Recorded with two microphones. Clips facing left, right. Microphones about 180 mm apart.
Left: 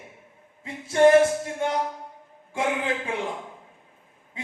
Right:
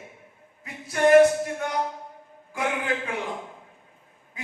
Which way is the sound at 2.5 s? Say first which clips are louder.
Left 1 dB; 25° left (ahead or behind).